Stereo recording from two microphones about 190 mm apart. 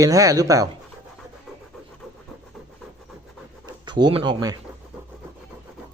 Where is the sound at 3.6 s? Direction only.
25° right (ahead or behind).